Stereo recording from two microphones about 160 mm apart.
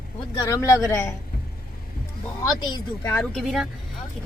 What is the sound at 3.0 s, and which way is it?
Speech, 5° left (ahead or behind).